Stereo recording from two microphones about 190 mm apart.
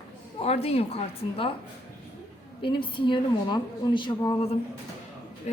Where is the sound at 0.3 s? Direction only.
35° left (ahead or behind).